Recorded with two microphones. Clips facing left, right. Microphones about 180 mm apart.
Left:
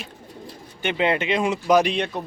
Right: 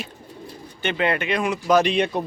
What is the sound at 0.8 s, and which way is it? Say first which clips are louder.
Speech: left 1 dB; 20° left (ahead or behind).